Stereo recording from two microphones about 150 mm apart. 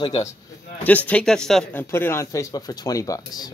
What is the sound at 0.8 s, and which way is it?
Speech, 10° left (ahead or behind).